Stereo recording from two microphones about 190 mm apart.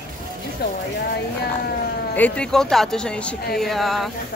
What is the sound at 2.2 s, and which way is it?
Speech, 5° left (ahead or behind).